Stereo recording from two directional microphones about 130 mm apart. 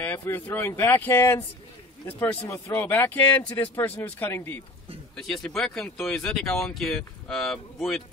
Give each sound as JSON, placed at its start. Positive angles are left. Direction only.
{"t": 0.0, "sound": "speech", "side_deg": 15}
{"t": 5.1, "sound": "speech", "side_deg": 5}